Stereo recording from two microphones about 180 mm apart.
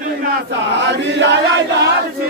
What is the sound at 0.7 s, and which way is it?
Chant, 75° right (ahead or behind).